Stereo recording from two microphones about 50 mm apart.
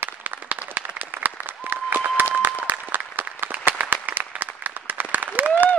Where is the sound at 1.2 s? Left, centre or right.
Right.